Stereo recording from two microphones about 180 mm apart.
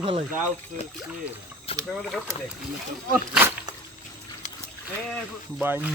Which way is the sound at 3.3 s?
15° right (ahead or behind).